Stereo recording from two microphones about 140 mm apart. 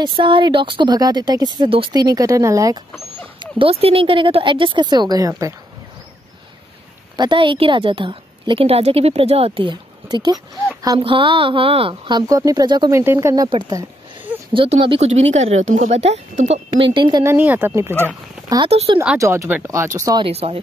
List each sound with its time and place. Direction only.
0.2 s a woman's voice: 35° right (ahead or behind)
3.3 s a woman's voice: 40° right (ahead or behind)
7.2 s a woman's voice: 35° right (ahead or behind)
12.9 s speech: 20° right (ahead or behind)
13.5 s a woman's voice: 35° right (ahead or behind); by 16.6 s 55° right (ahead or behind)
16.7 s a woman's voice: 35° right (ahead or behind)
17.2 s speech: 15° right (ahead or behind)
18.7 s speech: 45° right (ahead or behind)
19.1 s speech: 20° right (ahead or behind)
20.2 s speech: 45° right (ahead or behind)